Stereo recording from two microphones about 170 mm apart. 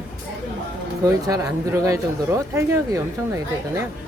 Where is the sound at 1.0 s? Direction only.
20° right (ahead or behind).